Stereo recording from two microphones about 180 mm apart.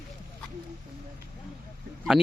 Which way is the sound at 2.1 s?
25° right (ahead or behind).